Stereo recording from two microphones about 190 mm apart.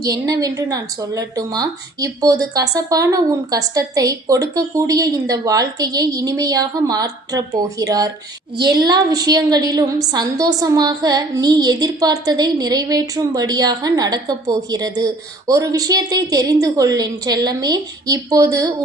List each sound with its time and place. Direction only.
0.0 s a woman's voice: 20° right (ahead or behind)